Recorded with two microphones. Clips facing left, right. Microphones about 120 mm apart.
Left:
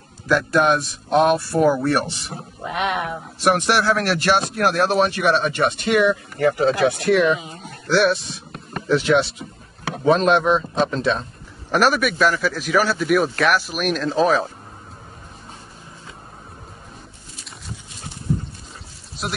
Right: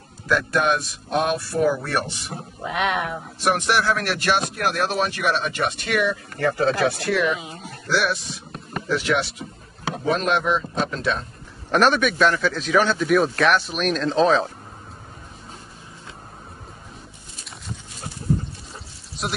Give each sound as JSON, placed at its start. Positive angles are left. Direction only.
{"t": 0.3, "sound": "speech", "side_deg": 30}
{"t": 2.2, "sound": "a man's voice", "side_deg": 0}
{"t": 3.4, "sound": "speech", "side_deg": 75}
{"t": 3.7, "sound": "speech", "side_deg": 35}
{"t": 11.7, "sound": "a man's voice", "side_deg": 5}
{"t": 19.2, "sound": "a man's voice", "side_deg": 0}